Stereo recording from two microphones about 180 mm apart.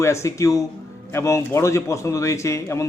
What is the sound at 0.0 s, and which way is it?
A man's voice, 15° left (ahead or behind).